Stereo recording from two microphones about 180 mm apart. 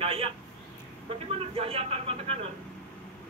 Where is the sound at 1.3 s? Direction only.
35° right (ahead or behind).